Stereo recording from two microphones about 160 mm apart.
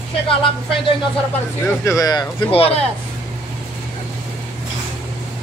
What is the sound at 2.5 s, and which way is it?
Speech, 35° left (ahead or behind).